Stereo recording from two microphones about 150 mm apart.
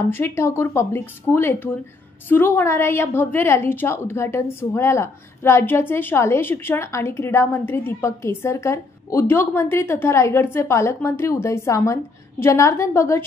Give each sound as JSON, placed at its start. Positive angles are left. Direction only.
{"t": 0.1, "sound": "a woman's voice", "side_deg": 15}